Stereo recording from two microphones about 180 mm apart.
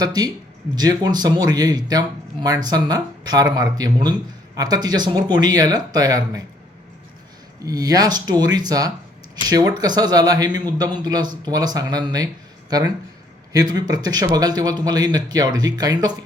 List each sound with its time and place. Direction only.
0.0 s speech: 20° right (ahead or behind)
7.6 s speech: 20° right (ahead or behind)
13.5 s speech: 20° right (ahead or behind)